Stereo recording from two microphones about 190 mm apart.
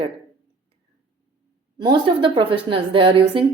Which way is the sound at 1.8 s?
25° right (ahead or behind).